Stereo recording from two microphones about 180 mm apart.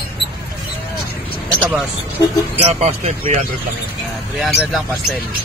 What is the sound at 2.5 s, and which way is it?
Speech, 35° right (ahead or behind).